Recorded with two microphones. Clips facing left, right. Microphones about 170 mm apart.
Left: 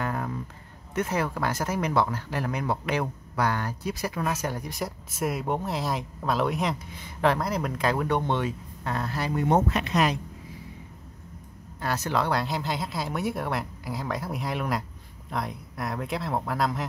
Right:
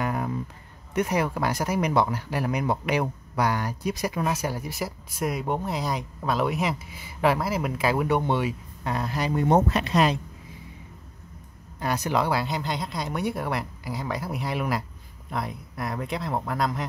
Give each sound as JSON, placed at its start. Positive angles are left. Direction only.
{"t": 0.0, "sound": "a sound", "side_deg": -10}
{"t": 0.9, "sound": "speech", "side_deg": -15}
{"t": 9.3, "sound": "speech", "side_deg": -35}
{"t": 11.8, "sound": "speech", "side_deg": -15}